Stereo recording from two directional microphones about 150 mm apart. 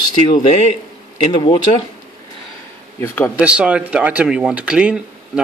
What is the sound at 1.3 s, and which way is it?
Speech, 30° left (ahead or behind).